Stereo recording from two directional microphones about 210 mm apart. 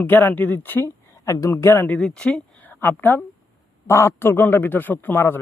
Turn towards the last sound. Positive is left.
turn(degrees=10)  # may be behind; listen again after turning